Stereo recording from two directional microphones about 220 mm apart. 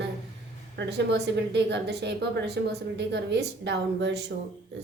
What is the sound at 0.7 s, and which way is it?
A woman's voice, 50° right (ahead or behind).